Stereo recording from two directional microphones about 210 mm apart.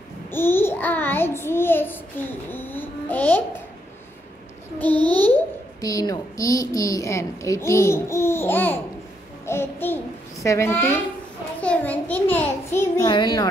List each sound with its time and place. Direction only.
0.3 s a child's voice: 10° left (ahead or behind)
4.7 s a child's voice: 5° left (ahead or behind)